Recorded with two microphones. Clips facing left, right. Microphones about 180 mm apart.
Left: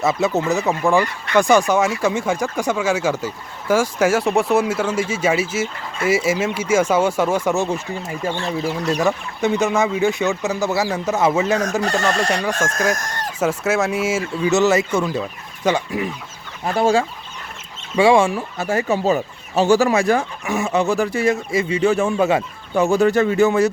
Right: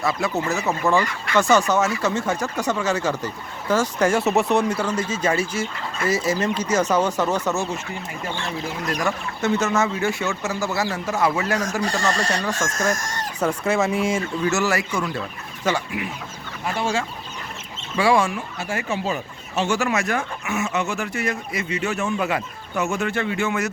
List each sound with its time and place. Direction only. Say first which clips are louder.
0.0 s speech: left 5 dB; 20° left (ahead or behind)
8.9 s speech: left 5 dB; 15° left (ahead or behind)
11.9 s speech: left 4 dB; 60° left (ahead or behind)
12.3 s speech: left 4 dB; 15° left (ahead or behind)
14.5 s speech: left 11 dB; 20° left (ahead or behind)
15.9 s speech: left 5 dB; 40° left (ahead or behind)
16.7 s chicken: left 8 dB; 45° left (ahead or behind)
17.9 s speech: left 5 dB; 25° left (ahead or behind)
18.5 s speech: left 7 dB; 40° left (ahead or behind)